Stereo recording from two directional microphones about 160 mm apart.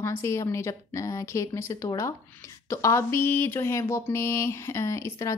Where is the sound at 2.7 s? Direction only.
20° left (ahead or behind).